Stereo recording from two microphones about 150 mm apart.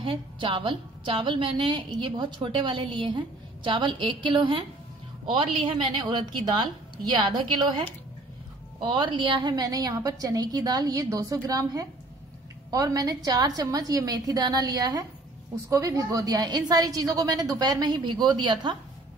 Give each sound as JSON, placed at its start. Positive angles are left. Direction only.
{"t": 0.0, "sound": "a woman's voice", "side_deg": -35}
{"t": 8.8, "sound": "a woman's voice", "side_deg": -35}